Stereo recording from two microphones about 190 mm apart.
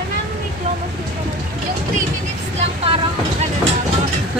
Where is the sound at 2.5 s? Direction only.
30° right (ahead or behind).